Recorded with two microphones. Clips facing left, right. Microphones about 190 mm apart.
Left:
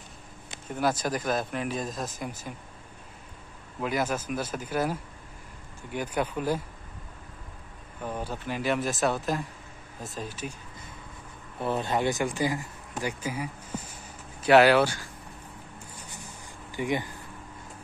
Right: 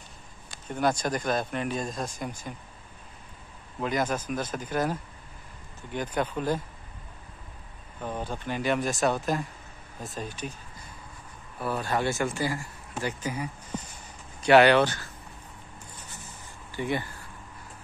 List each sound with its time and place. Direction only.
0.7 s speech: 5° left (ahead or behind)
3.8 s a man's voice: 5° left (ahead or behind)
8.0 s speech: 10° left (ahead or behind)
11.6 s a man's voice: 20° left (ahead or behind)
16.7 s a man's voice: 15° left (ahead or behind)